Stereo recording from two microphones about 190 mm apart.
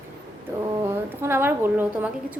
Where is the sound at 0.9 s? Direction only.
10° right (ahead or behind).